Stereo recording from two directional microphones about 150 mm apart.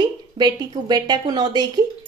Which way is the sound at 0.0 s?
30° right (ahead or behind).